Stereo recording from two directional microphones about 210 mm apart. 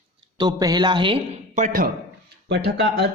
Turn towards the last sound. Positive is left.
turn(degrees=-55)  # may be behind; listen again after turning